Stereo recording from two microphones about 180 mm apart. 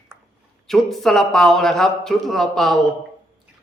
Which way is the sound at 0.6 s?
Centre (ahead or behind).